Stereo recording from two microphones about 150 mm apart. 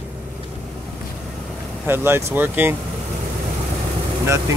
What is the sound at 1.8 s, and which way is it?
Speech, 15° right (ahead or behind).